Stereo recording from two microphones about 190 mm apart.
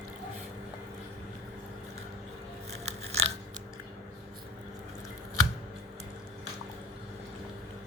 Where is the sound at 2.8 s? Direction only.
35° right (ahead or behind).